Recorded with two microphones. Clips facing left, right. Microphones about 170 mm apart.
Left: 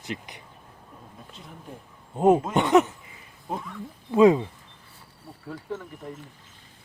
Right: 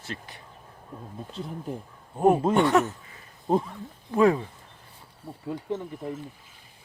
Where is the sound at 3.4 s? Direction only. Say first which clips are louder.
Right 9 dB; 30° right (ahead or behind).